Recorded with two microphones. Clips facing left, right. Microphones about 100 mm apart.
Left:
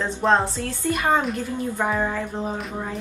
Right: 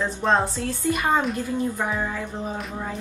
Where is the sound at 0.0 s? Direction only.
Centre (ahead or behind).